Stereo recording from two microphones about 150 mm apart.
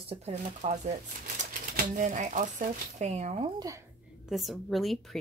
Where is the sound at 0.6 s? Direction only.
50° right (ahead or behind).